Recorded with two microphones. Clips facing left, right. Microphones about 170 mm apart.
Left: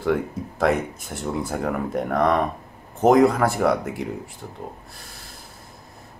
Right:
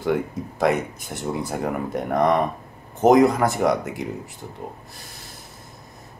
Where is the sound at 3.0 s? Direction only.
5° right (ahead or behind).